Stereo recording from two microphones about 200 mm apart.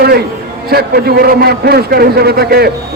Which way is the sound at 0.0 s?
50° right (ahead or behind).